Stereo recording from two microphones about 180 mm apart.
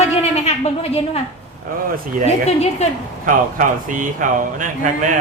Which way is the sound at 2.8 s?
35° left (ahead or behind).